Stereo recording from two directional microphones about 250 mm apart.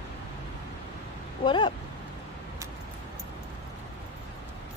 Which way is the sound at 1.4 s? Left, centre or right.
Centre.